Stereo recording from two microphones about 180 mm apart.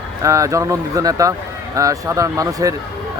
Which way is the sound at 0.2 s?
15° right (ahead or behind).